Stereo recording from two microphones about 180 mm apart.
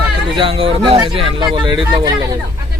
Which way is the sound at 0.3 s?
30° right (ahead or behind).